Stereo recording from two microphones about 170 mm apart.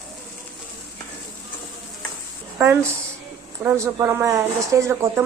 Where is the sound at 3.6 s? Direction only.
15° right (ahead or behind).